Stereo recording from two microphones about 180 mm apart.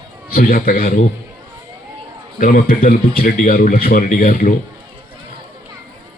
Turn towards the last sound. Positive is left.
turn(degrees=50)  # may be behind; listen again after turning